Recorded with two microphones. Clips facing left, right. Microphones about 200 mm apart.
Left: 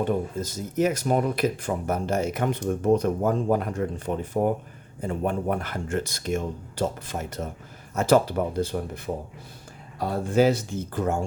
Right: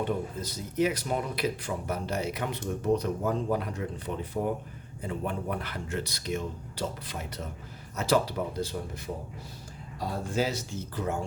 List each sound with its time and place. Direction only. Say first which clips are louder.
0.0 s speech: left 5 dB; 45° left (ahead or behind)
10.0 s speech: left 9 dB; 60° left (ahead or behind)